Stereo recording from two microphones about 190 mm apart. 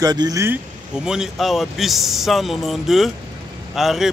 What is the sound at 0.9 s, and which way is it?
Speech, 5° right (ahead or behind).